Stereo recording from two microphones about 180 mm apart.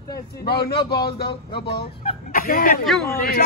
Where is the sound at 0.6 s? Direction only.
60° left (ahead or behind).